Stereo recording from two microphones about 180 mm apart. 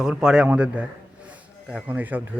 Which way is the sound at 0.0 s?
5° right (ahead or behind).